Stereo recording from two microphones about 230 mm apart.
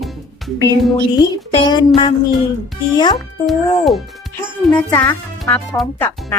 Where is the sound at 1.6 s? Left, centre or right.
Left.